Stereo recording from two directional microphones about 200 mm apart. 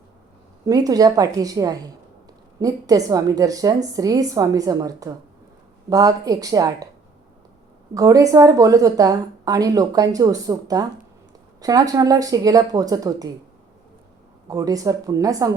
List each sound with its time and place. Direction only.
0.6 s a woman's voice: 20° right (ahead or behind)
7.9 s a woman's voice: 15° right (ahead or behind)
14.4 s a woman's voice: 15° right (ahead or behind)